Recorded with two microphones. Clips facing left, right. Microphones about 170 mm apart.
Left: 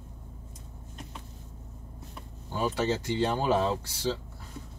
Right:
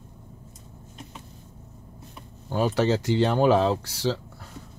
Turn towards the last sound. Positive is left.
turn(degrees=-90)